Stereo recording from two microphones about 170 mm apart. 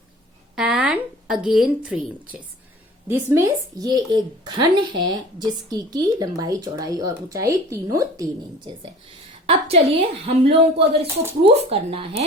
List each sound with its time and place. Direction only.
0.5 s a woman's voice: 5° right (ahead or behind)
3.1 s a woman's voice: 15° right (ahead or behind)
9.5 s speech: 35° right (ahead or behind)